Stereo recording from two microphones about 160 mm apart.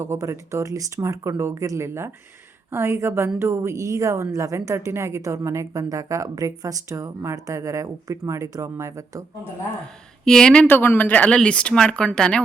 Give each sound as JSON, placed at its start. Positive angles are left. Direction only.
{"t": 0.0, "sound": "a woman's voice", "side_deg": -15}
{"t": 10.2, "sound": "speech", "side_deg": 5}